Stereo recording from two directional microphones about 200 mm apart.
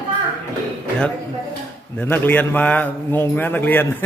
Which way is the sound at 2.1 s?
10° left (ahead or behind).